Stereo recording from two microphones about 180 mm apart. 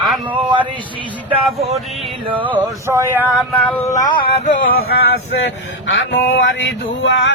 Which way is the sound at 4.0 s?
25° left (ahead or behind).